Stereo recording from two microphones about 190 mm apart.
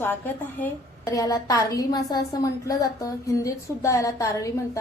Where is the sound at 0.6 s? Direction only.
15° left (ahead or behind).